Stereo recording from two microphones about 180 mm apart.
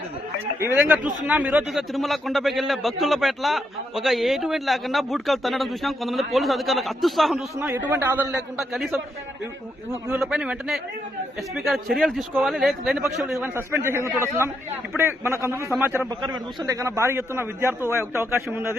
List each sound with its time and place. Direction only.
1.3 s a man's voice: 10° right (ahead or behind)
7.9 s a man's voice: 10° right (ahead or behind)
9.9 s a man's voice: 15° right (ahead or behind)
10.2 s a man's voice: 5° right (ahead or behind)